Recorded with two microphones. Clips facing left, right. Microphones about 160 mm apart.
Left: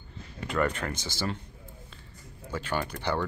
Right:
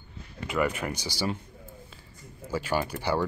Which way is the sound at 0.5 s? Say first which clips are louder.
Right 1 dB; 5° right (ahead or behind).